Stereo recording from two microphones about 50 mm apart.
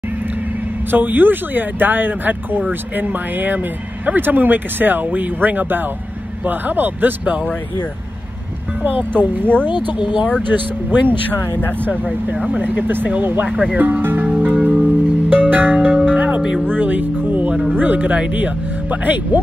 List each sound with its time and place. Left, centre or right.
0.9 s speech: right
8.8 s speech: right
10.9 s speech: right
14.8 s music: right
15.5 s speech: right
16.1 s music: right
16.7 s speech: right